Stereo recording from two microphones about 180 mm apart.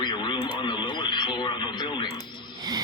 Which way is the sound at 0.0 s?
25° left (ahead or behind).